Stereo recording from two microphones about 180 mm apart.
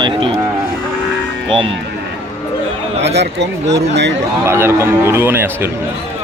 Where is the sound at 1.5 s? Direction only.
30° right (ahead or behind).